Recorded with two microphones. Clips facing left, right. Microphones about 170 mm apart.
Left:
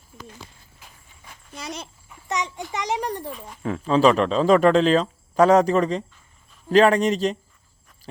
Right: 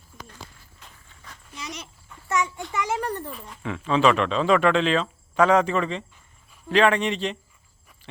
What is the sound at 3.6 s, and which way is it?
Speech, 40° left (ahead or behind).